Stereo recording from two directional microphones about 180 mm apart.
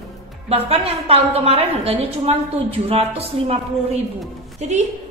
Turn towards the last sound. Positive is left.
turn(degrees=-40)  # may be behind; listen again after turning